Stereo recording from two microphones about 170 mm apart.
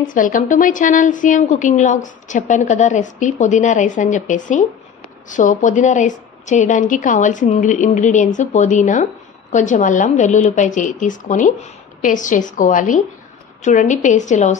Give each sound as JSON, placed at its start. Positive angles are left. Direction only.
{"t": 0.0, "sound": "a woman's voice", "side_deg": 50}